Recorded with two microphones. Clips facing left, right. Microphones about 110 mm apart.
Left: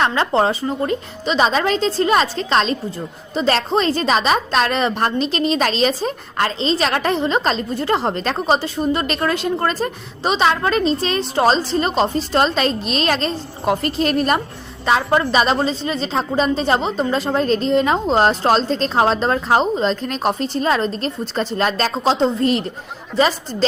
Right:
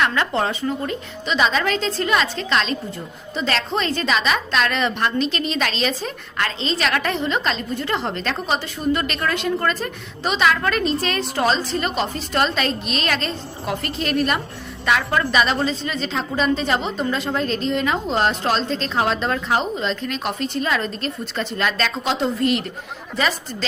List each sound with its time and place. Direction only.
0.0 s a woman's voice: 30° left (ahead or behind)